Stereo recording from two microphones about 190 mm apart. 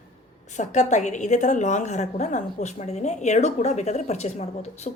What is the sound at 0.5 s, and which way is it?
A woman's voice, 40° left (ahead or behind).